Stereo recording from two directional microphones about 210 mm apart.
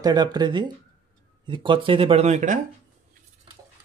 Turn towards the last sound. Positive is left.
turn(degrees=-35)  # may be behind; listen again after turning